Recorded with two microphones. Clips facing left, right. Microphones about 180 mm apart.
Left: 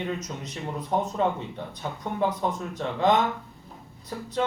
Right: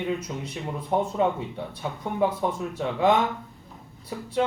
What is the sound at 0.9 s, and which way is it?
Speech, 5° right (ahead or behind).